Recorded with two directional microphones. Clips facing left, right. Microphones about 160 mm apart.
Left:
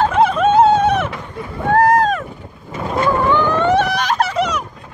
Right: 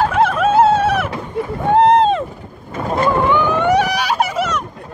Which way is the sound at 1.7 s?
25° right (ahead or behind).